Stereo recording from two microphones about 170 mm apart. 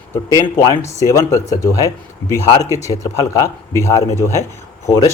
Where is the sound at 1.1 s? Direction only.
20° left (ahead or behind).